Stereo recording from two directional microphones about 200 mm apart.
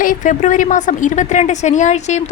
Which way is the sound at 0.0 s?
40° left (ahead or behind).